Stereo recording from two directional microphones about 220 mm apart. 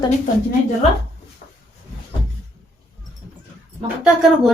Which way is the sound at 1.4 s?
35° left (ahead or behind).